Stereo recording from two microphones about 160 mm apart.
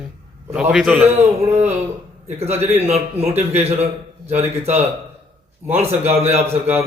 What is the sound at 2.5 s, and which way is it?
Speech, 40° right (ahead or behind).